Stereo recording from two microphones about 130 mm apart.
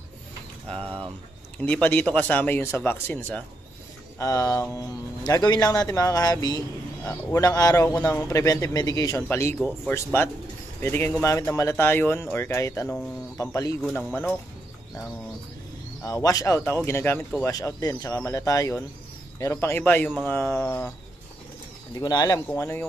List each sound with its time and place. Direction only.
0.7 s speech: 45° right (ahead or behind)
1.6 s speech: 10° left (ahead or behind)
4.2 s speech: 25° left (ahead or behind)
16.0 s speech: 25° left (ahead or behind)
22.0 s speech: 30° left (ahead or behind)
22.5 s speech: 20° left (ahead or behind)